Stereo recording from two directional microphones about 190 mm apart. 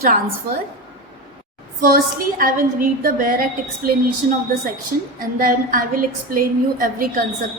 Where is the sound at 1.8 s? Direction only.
50° right (ahead or behind).